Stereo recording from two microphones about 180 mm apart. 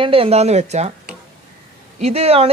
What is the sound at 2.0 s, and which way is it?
Speech, 35° right (ahead or behind).